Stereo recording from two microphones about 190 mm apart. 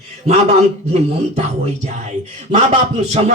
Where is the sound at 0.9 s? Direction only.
35° right (ahead or behind).